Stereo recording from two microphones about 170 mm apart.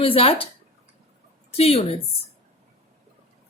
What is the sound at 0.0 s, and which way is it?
Speech, 35° left (ahead or behind).